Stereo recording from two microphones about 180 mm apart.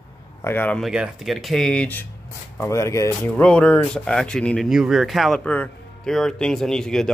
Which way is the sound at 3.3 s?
5° left (ahead or behind).